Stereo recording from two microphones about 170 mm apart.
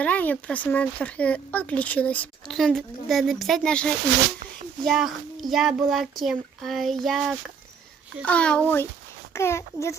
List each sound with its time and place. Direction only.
0.0 s a child's voice: 10° left (ahead or behind)